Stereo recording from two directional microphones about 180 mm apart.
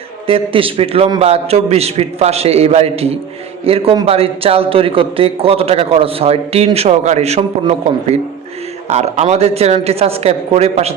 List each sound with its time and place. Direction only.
0.3 s a man's voice: 30° right (ahead or behind)